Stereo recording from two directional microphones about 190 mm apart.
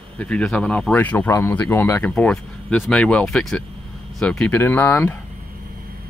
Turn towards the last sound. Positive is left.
turn(degrees=10)  # may be behind; listen again after turning